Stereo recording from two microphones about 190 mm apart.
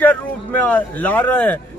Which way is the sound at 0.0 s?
10° left (ahead or behind).